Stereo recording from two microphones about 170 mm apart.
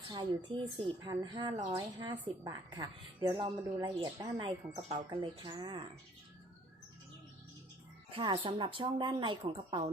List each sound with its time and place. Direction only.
0.1 s a woman's voice: 25° right (ahead or behind)
8.1 s a woman's voice: 30° right (ahead or behind)